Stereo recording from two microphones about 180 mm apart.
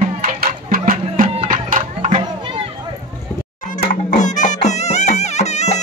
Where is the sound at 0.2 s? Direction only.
55° right (ahead or behind).